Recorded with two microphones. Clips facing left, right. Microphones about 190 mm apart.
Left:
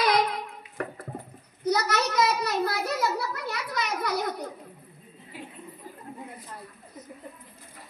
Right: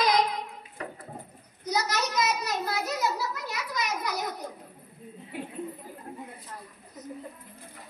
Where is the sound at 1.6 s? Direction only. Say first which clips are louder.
Left 4 dB; 60° left (ahead or behind).